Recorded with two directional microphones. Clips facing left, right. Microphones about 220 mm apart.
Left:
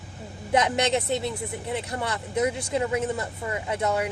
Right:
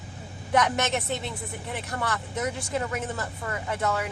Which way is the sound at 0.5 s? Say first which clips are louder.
Left 2 dB; 20° left (ahead or behind).